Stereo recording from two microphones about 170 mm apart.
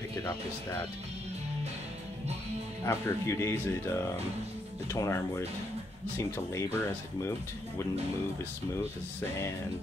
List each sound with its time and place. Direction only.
0.2 s speech: 15° left (ahead or behind)
2.8 s speech: 15° left (ahead or behind)
4.9 s speech: 15° left (ahead or behind)